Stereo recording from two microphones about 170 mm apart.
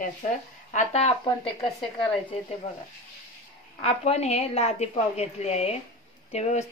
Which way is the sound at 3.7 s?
35° left (ahead or behind).